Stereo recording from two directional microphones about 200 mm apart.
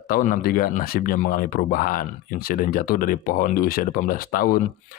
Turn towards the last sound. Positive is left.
turn(degrees=45)  # may be behind; listen again after turning